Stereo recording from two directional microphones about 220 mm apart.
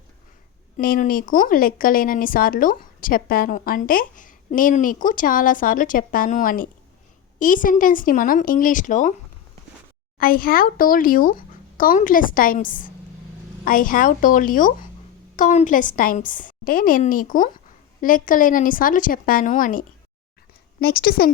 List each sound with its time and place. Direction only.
0.8 s speech: 40° left (ahead or behind)
10.2 s a woman's voice: 40° left (ahead or behind)